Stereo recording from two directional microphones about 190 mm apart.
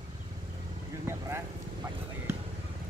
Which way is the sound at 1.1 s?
15° right (ahead or behind).